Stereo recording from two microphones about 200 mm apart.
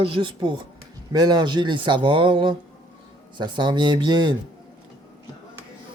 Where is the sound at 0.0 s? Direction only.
25° right (ahead or behind).